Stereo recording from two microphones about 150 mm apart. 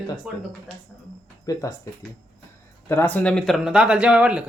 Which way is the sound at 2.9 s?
10° left (ahead or behind).